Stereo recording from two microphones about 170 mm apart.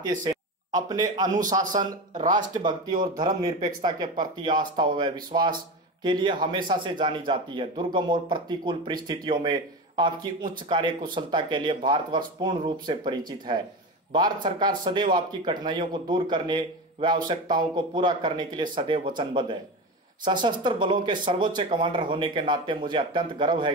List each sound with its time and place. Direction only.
0.2 s speech: 25° right (ahead or behind)
1.8 s speech: 50° right (ahead or behind)
2.3 s speech: 25° right (ahead or behind)